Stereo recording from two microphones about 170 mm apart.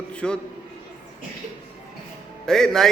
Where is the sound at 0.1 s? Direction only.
5° left (ahead or behind).